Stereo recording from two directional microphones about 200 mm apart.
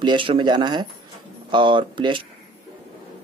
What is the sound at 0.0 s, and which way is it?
Speech, 25° right (ahead or behind).